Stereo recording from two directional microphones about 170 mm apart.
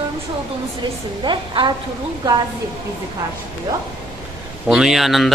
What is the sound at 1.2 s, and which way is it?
Speech, 30° right (ahead or behind).